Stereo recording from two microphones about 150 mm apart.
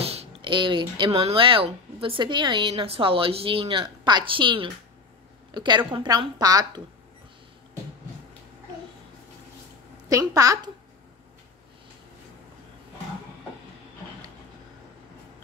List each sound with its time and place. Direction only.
0.0 s a woman's voice: 40° right (ahead or behind); by 6.8 s 25° right (ahead or behind)
10.0 s a woman's voice: 25° right (ahead or behind)